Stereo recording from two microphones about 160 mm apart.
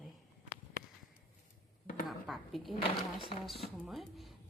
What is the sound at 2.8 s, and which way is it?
Speech, 30° left (ahead or behind).